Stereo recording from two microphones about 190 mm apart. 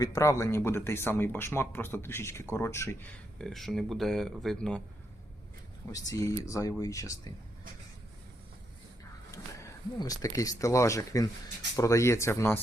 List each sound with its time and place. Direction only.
0.0 s speech: 15° left (ahead or behind)
3.3 s speech: centre (ahead or behind)
6.1 s speech: 15° left (ahead or behind)
9.3 s speech: 15° left (ahead or behind)